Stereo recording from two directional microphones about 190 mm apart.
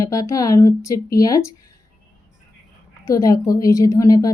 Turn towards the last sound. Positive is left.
turn(degrees=20)  # may be behind; listen again after turning